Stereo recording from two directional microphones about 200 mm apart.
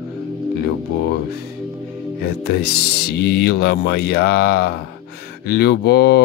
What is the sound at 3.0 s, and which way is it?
Speech, 55° left (ahead or behind).